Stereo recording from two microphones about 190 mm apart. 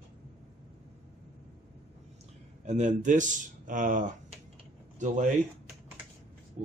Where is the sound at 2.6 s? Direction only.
40° right (ahead or behind).